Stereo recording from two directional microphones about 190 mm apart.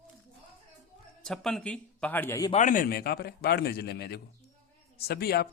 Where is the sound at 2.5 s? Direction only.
40° left (ahead or behind).